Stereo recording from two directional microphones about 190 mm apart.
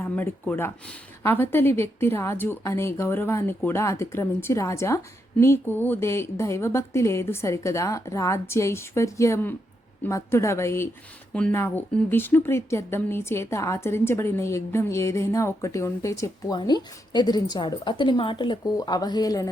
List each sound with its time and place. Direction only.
0.0 s speech: 10° left (ahead or behind)